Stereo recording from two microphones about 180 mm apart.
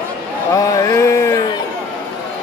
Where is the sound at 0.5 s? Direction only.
20° left (ahead or behind).